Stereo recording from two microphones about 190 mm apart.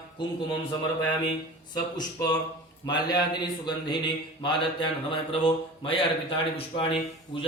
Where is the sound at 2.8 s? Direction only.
20° left (ahead or behind).